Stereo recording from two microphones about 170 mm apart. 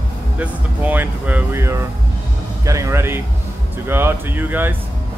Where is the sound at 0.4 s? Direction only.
10° right (ahead or behind).